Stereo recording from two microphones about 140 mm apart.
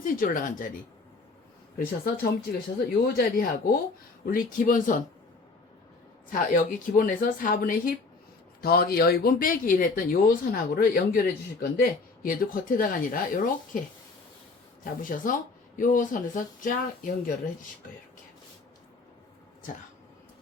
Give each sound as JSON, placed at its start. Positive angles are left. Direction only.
{"t": 0.0, "sound": "speech", "side_deg": 75}
{"t": 1.8, "sound": "speech", "side_deg": 90}
{"t": 6.5, "sound": "speech", "side_deg": 75}
{"t": 15.0, "sound": "speech", "side_deg": 70}